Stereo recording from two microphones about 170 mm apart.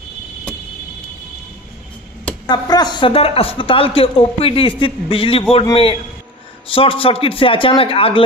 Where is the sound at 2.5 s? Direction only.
25° left (ahead or behind).